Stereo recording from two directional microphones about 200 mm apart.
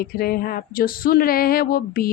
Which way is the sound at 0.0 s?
50° left (ahead or behind).